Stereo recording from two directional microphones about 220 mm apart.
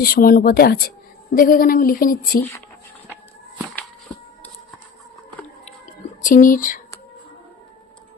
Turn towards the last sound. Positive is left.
turn(degrees=35)  # may be behind; listen again after turning